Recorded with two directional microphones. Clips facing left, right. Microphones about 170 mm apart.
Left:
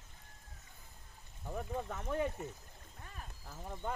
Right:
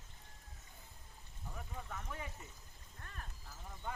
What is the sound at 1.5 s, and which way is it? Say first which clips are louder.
Speech: left 9 dB; 45° left (ahead or behind).